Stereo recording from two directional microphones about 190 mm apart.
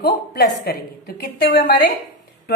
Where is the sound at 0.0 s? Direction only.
55° left (ahead or behind).